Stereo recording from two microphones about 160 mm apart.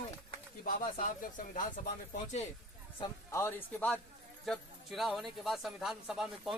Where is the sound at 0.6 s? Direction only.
65° left (ahead or behind).